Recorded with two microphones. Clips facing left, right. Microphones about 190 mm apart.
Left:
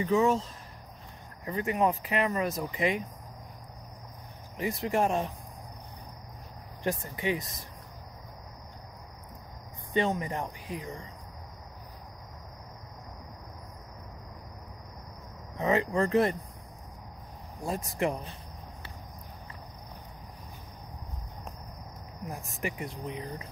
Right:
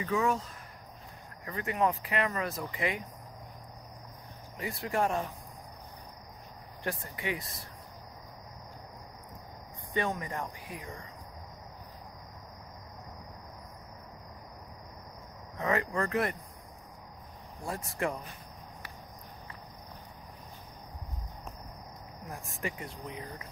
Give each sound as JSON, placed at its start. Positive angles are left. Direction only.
{"t": 0.0, "sound": "speech", "side_deg": 25}
{"t": 4.6, "sound": "speech", "side_deg": 20}
{"t": 6.8, "sound": "speech", "side_deg": 20}
{"t": 9.9, "sound": "speech", "side_deg": 25}
{"t": 15.6, "sound": "speech", "side_deg": 20}
{"t": 17.6, "sound": "speech", "side_deg": 20}
{"t": 22.3, "sound": "speech", "side_deg": 20}